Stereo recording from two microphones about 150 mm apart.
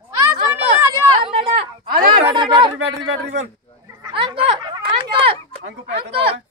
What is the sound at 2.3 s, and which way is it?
Speech, 30° right (ahead or behind).